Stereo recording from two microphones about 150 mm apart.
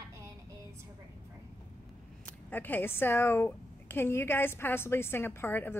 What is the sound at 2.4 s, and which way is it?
A woman's voice, 10° left (ahead or behind).